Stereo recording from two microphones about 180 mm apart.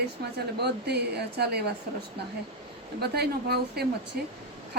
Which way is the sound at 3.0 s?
65° right (ahead or behind).